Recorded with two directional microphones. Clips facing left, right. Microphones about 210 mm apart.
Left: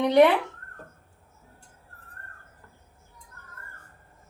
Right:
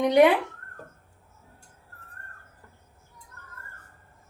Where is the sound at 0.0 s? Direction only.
10° right (ahead or behind).